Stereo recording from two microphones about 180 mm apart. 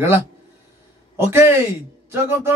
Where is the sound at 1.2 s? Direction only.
15° right (ahead or behind).